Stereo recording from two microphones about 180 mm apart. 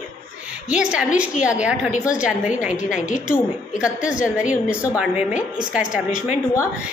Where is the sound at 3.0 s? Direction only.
45° left (ahead or behind).